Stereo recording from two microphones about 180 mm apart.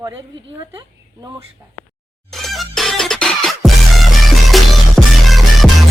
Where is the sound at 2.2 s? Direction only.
Centre (ahead or behind).